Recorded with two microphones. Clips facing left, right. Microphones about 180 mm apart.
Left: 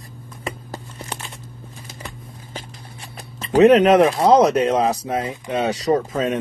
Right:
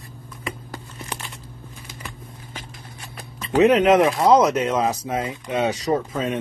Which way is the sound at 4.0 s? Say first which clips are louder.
Left 2 dB; 60° left (ahead or behind).